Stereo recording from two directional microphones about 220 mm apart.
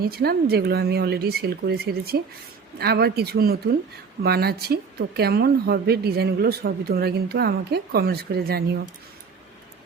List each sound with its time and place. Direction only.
0.0 s a woman's voice: 45° right (ahead or behind)